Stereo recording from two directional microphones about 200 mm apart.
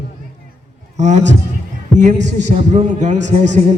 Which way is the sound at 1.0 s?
35° right (ahead or behind).